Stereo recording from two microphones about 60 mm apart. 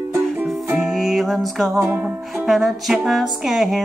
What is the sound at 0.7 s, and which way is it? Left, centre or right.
Music, centre.